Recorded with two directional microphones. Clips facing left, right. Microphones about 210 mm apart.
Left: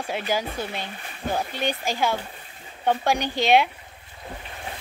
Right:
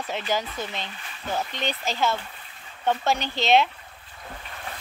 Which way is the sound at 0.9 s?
50° left (ahead or behind).